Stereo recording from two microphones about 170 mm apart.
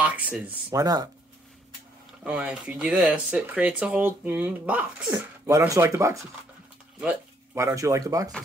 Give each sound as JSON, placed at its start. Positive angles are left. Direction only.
{"t": 0.0, "sound": "speech", "side_deg": -10}
{"t": 2.2, "sound": "speech", "side_deg": -5}
{"t": 5.1, "sound": "speech", "side_deg": -20}
{"t": 7.5, "sound": "speech", "side_deg": -20}